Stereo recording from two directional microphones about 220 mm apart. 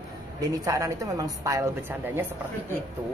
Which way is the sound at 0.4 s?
15° right (ahead or behind).